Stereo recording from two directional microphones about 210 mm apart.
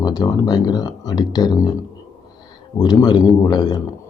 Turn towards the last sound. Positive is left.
turn(degrees=20)  # may be behind; listen again after turning